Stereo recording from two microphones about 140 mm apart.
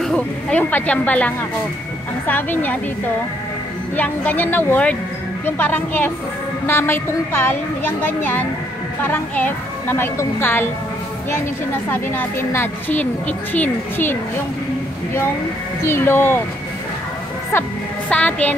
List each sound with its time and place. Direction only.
0.0 s a woman's voice: 5° left (ahead or behind)
3.9 s a woman's voice: 10° left (ahead or behind)
11.9 s a woman's voice: 15° left (ahead or behind)
15.8 s a woman's voice: 15° left (ahead or behind)
18.1 s a woman's voice: 10° left (ahead or behind)